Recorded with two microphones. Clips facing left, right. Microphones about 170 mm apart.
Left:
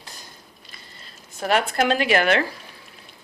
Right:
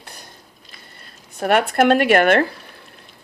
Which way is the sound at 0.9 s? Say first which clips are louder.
Right 5 dB; 55° right (ahead or behind).